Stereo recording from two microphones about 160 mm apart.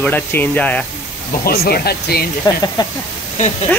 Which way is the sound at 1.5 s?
75° left (ahead or behind).